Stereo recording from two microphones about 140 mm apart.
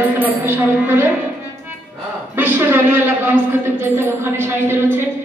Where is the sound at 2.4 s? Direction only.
15° right (ahead or behind).